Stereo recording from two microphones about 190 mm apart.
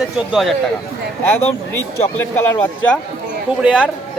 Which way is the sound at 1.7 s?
15° left (ahead or behind).